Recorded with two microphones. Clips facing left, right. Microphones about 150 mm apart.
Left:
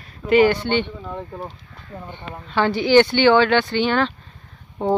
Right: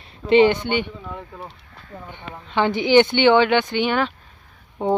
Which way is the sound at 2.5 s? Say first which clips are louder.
Left 1 dB; 20° right (ahead or behind).